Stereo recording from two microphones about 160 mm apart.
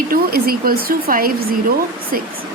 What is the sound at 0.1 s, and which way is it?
Speech, 70° right (ahead or behind).